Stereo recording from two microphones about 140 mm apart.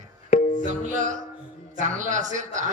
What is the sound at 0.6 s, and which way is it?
A man's voice, 60° right (ahead or behind).